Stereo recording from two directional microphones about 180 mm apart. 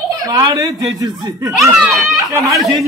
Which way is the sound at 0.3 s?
20° right (ahead or behind).